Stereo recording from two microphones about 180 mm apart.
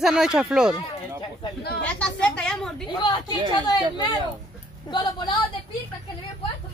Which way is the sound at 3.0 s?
25° left (ahead or behind).